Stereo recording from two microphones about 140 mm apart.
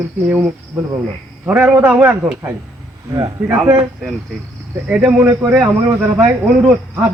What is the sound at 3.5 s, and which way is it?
Speech, 5° right (ahead or behind).